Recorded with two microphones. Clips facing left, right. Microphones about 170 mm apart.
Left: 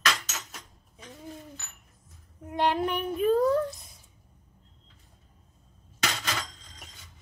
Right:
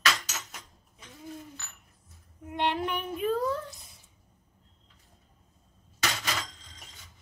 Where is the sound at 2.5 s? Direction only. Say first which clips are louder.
Left 3 dB; 40° left (ahead or behind).